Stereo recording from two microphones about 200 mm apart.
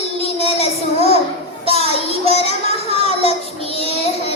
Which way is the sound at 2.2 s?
30° left (ahead or behind).